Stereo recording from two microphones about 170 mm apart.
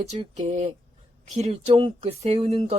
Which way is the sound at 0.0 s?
40° right (ahead or behind).